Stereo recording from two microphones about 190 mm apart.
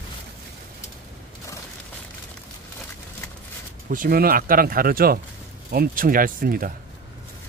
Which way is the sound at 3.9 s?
50° right (ahead or behind).